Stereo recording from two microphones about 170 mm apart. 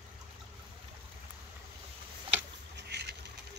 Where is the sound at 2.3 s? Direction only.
85° right.